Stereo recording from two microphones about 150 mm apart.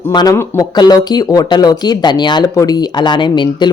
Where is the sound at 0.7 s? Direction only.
25° left (ahead or behind).